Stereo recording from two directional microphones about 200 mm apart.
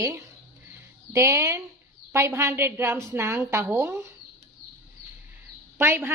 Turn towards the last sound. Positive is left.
turn(degrees=-10)  # may be behind; listen again after turning